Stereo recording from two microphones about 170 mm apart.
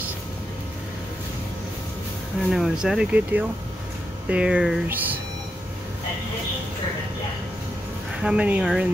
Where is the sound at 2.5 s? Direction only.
Centre (ahead or behind).